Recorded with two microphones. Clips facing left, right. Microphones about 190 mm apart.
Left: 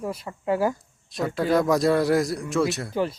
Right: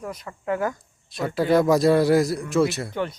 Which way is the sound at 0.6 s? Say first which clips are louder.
Left 3 dB; centre (ahead or behind).